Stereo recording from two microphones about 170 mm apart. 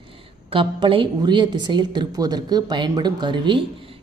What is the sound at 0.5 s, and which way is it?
A man's voice, 30° right (ahead or behind).